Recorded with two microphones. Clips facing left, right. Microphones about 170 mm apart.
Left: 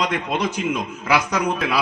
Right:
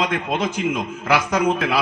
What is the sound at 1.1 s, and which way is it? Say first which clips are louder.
Speech: right 2 dB; 50° right (ahead or behind).